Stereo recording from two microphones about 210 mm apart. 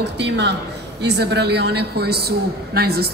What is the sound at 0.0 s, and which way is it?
A woman's voice, 55° right (ahead or behind).